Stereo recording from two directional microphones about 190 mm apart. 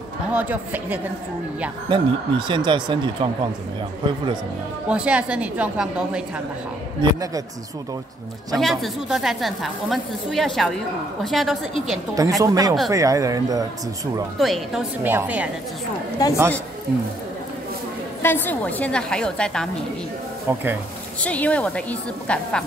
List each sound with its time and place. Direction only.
0.3 s a woman's voice: 10° right (ahead or behind)
1.9 s speech: 25° right (ahead or behind)
4.8 s speech: 5° right (ahead or behind)
7.0 s speech: 20° right (ahead or behind)
8.5 s speech: centre (ahead or behind)
12.2 s a woman's voice: 20° right (ahead or behind)
14.4 s a woman's voice: centre (ahead or behind)
16.2 s speech: 20° left (ahead or behind)
18.2 s speech: 10° left (ahead or behind)
20.5 s a woman's voice: 10° right (ahead or behind)
21.2 s speech: 5° left (ahead or behind)